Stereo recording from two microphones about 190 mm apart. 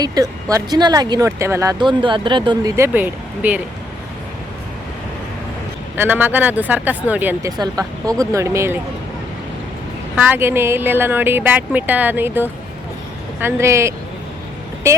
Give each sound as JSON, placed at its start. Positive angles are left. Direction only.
{"t": 0.0, "sound": "speech", "side_deg": -20}
{"t": 6.0, "sound": "speech", "side_deg": -10}
{"t": 7.5, "sound": "speech", "side_deg": -20}
{"t": 10.2, "sound": "speech", "side_deg": -10}